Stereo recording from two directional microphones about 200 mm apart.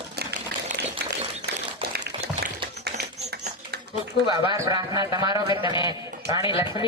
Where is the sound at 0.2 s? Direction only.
55° right (ahead or behind).